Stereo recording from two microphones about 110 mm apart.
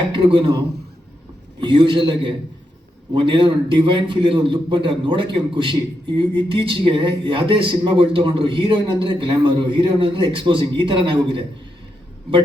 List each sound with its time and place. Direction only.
0.1 s a man's voice: 50° right (ahead or behind)
1.6 s a man's voice: 50° right (ahead or behind)